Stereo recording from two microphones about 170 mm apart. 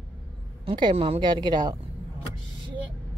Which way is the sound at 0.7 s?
30° right (ahead or behind).